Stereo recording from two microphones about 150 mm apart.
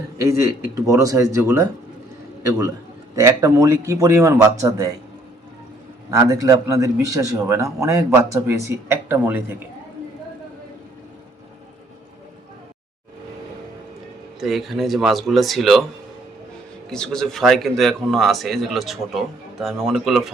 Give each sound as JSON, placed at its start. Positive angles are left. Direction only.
{"t": 0.2, "sound": "a man's voice", "side_deg": -20}
{"t": 6.1, "sound": "a man's voice", "side_deg": -25}
{"t": 14.3, "sound": "speech", "side_deg": 0}
{"t": 16.9, "sound": "speech", "side_deg": 5}